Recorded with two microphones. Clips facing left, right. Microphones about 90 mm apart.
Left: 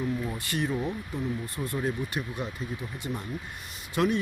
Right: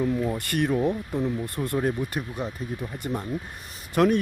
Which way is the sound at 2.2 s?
40° right (ahead or behind).